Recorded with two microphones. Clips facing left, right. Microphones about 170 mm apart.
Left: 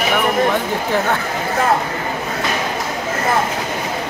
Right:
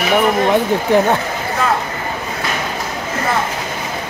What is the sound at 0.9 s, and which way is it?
Speech, 20° right (ahead or behind).